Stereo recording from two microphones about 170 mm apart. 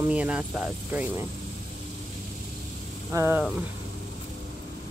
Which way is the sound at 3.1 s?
15° right (ahead or behind).